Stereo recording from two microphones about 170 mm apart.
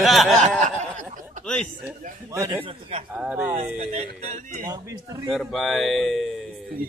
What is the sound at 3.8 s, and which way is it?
Speech, 45° right (ahead or behind).